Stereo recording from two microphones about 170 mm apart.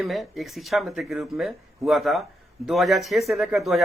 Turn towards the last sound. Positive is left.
turn(degrees=0)  # may be behind; listen again after turning